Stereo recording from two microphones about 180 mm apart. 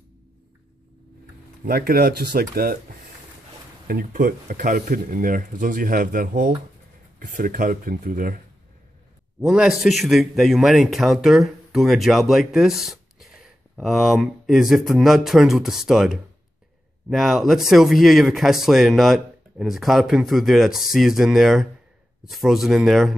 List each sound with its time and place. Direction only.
1.6 s speech: 55° right (ahead or behind)
3.8 s speech: 50° right (ahead or behind)
9.4 s speech: 5° right (ahead or behind)